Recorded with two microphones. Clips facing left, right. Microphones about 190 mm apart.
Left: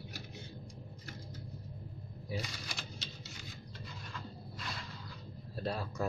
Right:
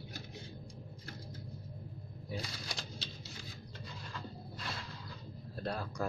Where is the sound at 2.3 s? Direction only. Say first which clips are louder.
Even; 35° right (ahead or behind).